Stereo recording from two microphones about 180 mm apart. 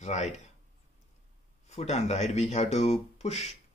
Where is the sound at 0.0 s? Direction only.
40° left (ahead or behind).